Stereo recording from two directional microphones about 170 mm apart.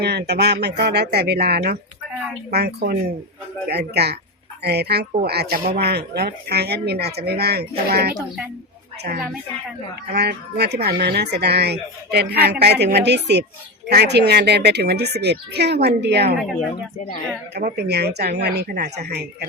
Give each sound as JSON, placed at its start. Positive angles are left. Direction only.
{"t": 0.0, "sound": "a woman's voice", "side_deg": -75}
{"t": 10.2, "sound": "speech", "side_deg": -75}
{"t": 16.4, "sound": "speech", "side_deg": 0}
{"t": 17.6, "sound": "speech", "side_deg": -50}
{"t": 17.8, "sound": "speech", "side_deg": -75}